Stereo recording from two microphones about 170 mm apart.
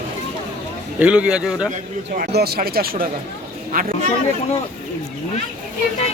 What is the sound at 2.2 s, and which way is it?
A man's voice, 65° right (ahead or behind).